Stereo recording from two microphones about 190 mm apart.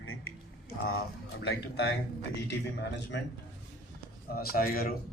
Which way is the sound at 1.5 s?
60° left (ahead or behind).